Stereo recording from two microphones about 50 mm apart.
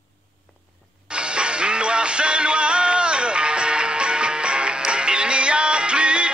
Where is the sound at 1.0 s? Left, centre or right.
Centre.